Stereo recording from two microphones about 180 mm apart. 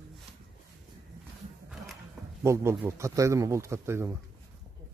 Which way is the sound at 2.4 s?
15° right (ahead or behind).